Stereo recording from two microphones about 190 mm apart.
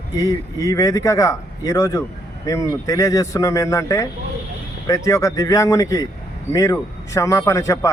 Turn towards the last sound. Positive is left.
turn(degrees=15)  # may be behind; listen again after turning